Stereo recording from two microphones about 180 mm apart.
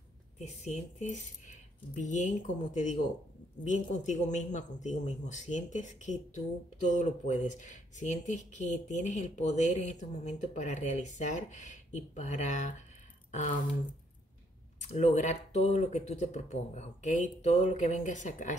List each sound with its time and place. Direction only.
0.4 s speech: 40° left (ahead or behind)
14.8 s speech: 35° left (ahead or behind)